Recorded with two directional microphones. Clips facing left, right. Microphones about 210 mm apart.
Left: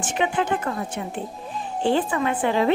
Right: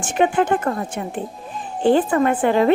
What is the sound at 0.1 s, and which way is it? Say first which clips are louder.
A woman's voice: right 6 dB; 50° right (ahead or behind).